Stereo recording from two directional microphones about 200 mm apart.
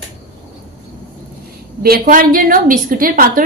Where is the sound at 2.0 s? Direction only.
45° right (ahead or behind).